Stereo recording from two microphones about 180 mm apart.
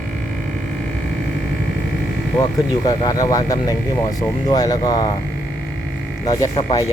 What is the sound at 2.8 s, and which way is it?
Speech, 20° left (ahead or behind).